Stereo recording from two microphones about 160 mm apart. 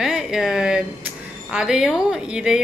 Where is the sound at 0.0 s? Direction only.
5° right (ahead or behind).